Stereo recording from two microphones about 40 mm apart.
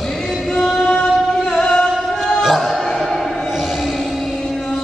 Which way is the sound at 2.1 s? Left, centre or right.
Centre.